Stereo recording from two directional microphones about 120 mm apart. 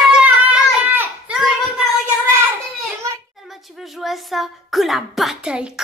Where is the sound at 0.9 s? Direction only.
15° right (ahead or behind).